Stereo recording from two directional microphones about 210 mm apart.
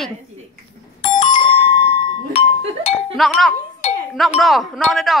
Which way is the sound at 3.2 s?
Centre (ahead or behind).